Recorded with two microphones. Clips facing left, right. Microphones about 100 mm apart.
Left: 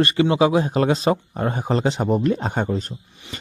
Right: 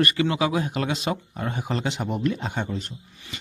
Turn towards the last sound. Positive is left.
turn(degrees=40)  # may be behind; listen again after turning